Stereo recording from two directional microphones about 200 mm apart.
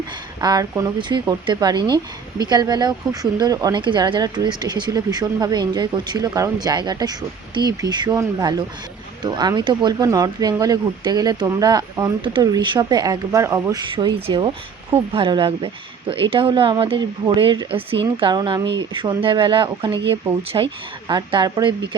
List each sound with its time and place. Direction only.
0.4 s speech: 20° right (ahead or behind)